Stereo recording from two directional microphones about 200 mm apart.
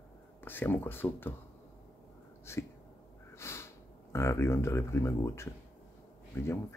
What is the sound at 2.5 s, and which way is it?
Speech, 15° left (ahead or behind).